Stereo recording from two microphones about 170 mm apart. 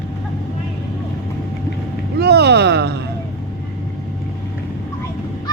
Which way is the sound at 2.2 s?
75° right (ahead or behind).